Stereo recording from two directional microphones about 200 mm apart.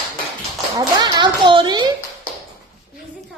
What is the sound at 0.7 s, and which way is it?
Speech, 20° right (ahead or behind).